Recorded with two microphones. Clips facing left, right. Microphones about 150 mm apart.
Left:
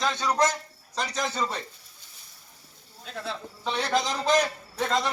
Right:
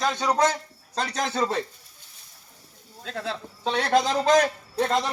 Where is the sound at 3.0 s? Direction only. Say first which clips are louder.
Right 3 dB; 90° right.